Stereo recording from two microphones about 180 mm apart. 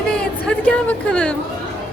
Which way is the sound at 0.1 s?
5° left (ahead or behind).